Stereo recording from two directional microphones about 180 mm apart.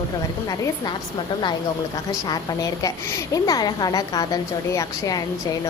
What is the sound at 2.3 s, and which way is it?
A woman's voice, 20° left (ahead or behind).